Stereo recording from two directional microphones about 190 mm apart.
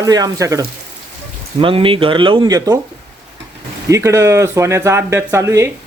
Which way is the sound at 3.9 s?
15° right (ahead or behind).